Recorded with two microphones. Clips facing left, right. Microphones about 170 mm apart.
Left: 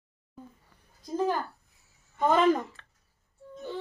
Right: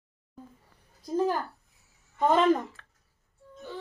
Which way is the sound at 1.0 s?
5° right (ahead or behind).